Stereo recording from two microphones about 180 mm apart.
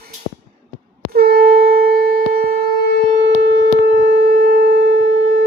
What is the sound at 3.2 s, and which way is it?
Shofar, 90° right.